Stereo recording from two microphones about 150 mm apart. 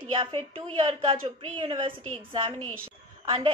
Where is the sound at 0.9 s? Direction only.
40° right (ahead or behind).